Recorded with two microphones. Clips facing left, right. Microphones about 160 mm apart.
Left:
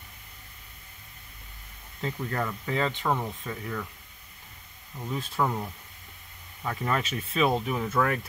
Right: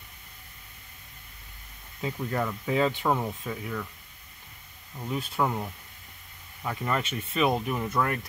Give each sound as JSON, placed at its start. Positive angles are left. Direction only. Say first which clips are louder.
{"t": 2.0, "sound": "speech", "louder": "right 1 dB", "side_deg": -10}
{"t": 5.0, "sound": "speech", "louder": "right 1 dB", "side_deg": -10}